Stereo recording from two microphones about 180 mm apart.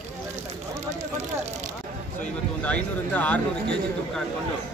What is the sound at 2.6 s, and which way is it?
Speech, 10° left (ahead or behind).